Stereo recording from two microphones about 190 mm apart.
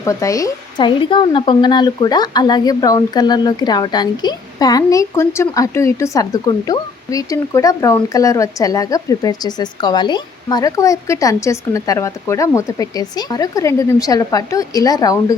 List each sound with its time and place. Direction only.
0.0 s speech: 15° left (ahead or behind)